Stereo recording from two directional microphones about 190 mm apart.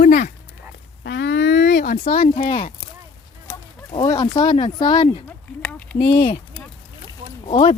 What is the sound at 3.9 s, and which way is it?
Speech, 20° left (ahead or behind).